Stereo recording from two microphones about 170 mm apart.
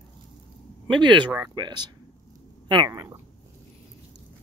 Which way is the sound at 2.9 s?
15° right (ahead or behind).